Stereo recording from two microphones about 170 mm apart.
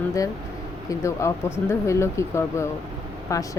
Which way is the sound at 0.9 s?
15° left (ahead or behind).